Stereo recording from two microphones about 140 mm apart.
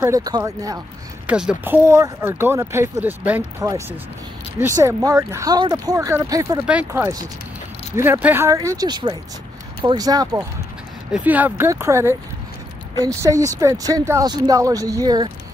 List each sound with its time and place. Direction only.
0.0 s speech: 25° right (ahead or behind)
1.2 s speech: 5° right (ahead or behind)
4.7 s speech: 25° right (ahead or behind)
6.6 s speech: 10° right (ahead or behind)
8.5 s speech: 25° right (ahead or behind)
11.1 s speech: 10° right (ahead or behind); by 15.3 s 30° right (ahead or behind)